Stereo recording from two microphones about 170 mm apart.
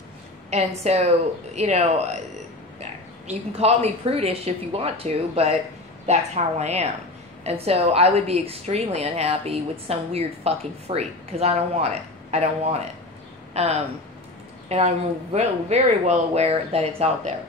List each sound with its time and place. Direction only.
0.5 s a woman's voice: 40° right (ahead or behind)
13.5 s a sound: 40° right (ahead or behind)
14.7 s a woman's voice: 40° right (ahead or behind)